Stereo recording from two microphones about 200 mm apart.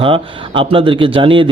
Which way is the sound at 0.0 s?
25° right (ahead or behind).